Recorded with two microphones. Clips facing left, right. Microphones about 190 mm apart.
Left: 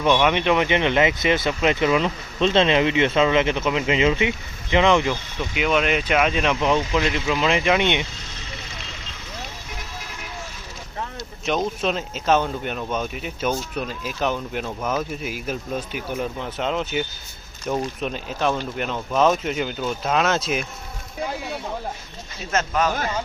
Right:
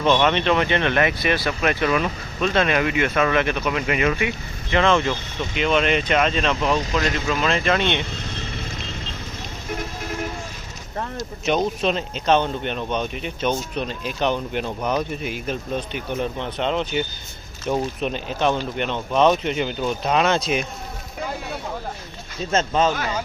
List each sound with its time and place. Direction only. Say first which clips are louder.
0.0 s speech: even; 10° left (ahead or behind)
11.4 s speech: right 2 dB; centre (ahead or behind)
22.5 s speech: right 2 dB; 25° right (ahead or behind)